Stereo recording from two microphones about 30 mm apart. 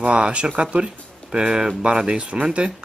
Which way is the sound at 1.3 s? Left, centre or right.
Right.